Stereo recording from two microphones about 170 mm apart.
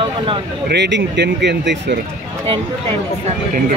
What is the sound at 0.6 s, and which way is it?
Speech, 90° right.